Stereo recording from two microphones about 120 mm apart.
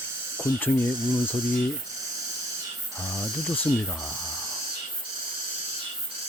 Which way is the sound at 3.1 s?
25° left (ahead or behind).